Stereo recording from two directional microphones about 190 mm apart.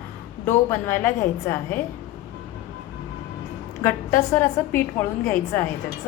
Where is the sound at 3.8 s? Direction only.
10° left (ahead or behind).